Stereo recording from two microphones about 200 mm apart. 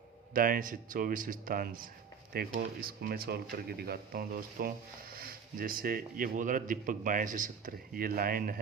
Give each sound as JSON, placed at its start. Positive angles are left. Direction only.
{"t": 0.3, "sound": "speech", "side_deg": -45}